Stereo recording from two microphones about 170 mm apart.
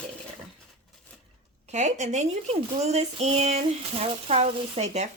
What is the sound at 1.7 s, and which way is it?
Speech, 45° right (ahead or behind).